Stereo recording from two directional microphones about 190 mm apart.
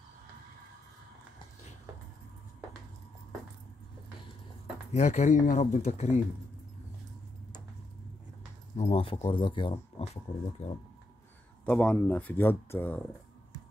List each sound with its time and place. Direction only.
4.9 s speech: 35° left (ahead or behind)
8.7 s speech: 30° left (ahead or behind)
10.6 s speech: 35° left (ahead or behind)
11.6 s speech: 5° left (ahead or behind)